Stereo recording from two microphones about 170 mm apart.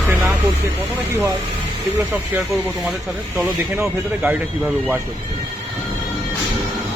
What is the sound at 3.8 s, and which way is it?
Speech, 10° right (ahead or behind).